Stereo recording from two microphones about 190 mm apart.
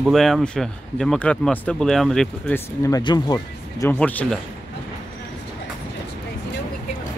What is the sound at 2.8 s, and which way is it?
Speech, 20° left (ahead or behind).